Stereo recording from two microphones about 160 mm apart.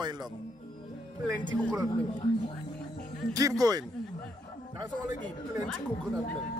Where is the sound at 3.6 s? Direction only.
25° right (ahead or behind).